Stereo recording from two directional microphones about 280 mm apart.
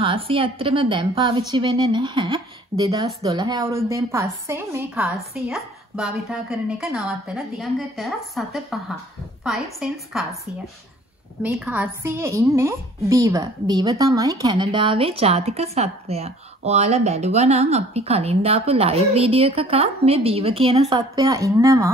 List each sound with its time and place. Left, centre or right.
0.0 s a woman's voice: centre
11.4 s a woman's voice: centre